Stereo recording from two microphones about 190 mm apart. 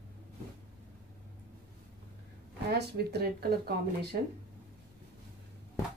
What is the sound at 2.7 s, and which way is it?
Speech, 55° right (ahead or behind).